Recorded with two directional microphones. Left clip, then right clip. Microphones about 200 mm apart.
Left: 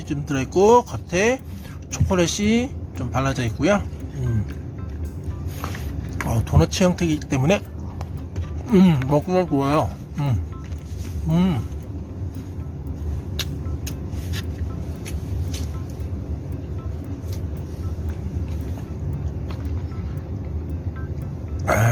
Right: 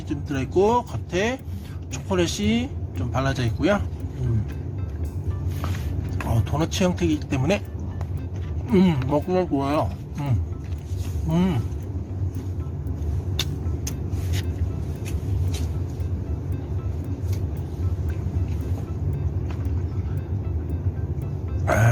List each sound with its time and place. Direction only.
0.1 s speech: 20° left (ahead or behind)
6.2 s speech: 15° left (ahead or behind)
8.7 s speech: 15° left (ahead or behind)
11.3 s speech: 5° left (ahead or behind)
13.3 s vehicle: centre (ahead or behind)
21.7 s music: 10° left (ahead or behind)